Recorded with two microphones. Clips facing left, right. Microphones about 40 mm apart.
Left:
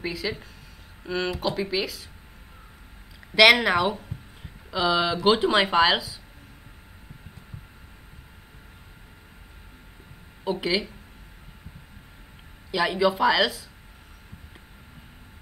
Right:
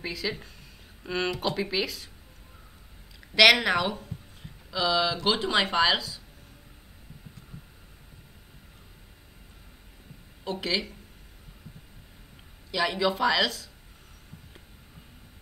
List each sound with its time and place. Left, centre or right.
0.0 s speech: centre
3.3 s speech: centre
10.4 s speech: centre
12.7 s speech: centre